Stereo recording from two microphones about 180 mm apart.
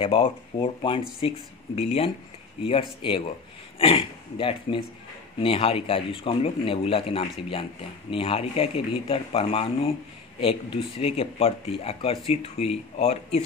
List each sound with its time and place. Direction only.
0.0 s speech: 30° left (ahead or behind)
11.0 s speech: 35° left (ahead or behind)